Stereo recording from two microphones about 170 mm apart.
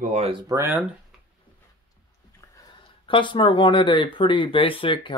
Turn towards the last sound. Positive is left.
turn(degrees=30)  # may be behind; listen again after turning